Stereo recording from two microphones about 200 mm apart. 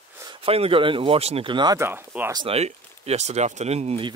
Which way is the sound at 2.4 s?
30° right (ahead or behind).